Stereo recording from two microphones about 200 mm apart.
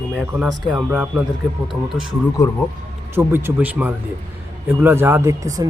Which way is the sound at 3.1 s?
10° right (ahead or behind).